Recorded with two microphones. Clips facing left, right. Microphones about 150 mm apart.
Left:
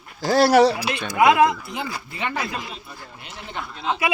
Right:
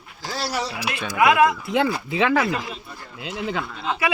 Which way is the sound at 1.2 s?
25° left (ahead or behind).